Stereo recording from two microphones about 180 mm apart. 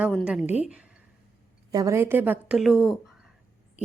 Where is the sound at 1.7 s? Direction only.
20° right (ahead or behind); by 2.9 s centre (ahead or behind).